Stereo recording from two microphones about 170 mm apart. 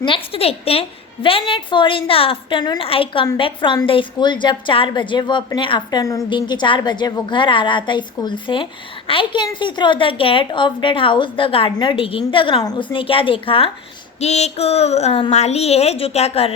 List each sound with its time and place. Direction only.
0.0 s a woman's voice: 30° left (ahead or behind)